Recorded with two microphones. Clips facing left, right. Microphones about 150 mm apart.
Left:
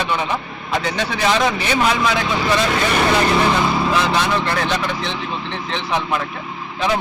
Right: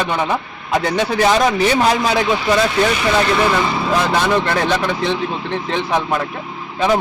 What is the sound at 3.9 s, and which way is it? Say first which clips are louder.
Speech: right 2 dB; 50° right (ahead or behind).